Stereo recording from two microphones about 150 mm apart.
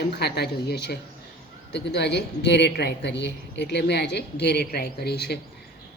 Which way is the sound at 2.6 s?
90° left.